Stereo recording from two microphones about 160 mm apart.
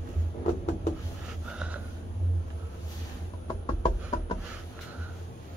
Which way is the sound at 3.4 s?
35° left (ahead or behind).